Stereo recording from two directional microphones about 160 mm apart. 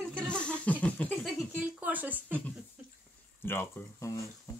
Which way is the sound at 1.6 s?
10° right (ahead or behind).